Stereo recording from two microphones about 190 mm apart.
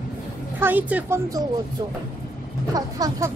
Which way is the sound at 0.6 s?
10° right (ahead or behind).